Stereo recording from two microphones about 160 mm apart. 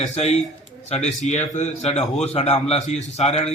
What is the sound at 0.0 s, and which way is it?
A man's voice, 45° left (ahead or behind).